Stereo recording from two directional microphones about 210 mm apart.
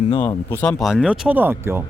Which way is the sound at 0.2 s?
10° left (ahead or behind).